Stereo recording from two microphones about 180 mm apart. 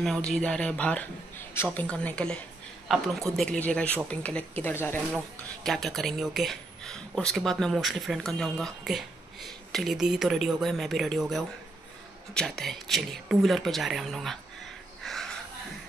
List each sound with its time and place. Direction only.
0.0 s speech: centre (ahead or behind)